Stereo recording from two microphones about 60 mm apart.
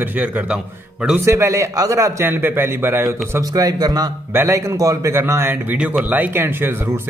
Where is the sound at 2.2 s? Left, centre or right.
Right.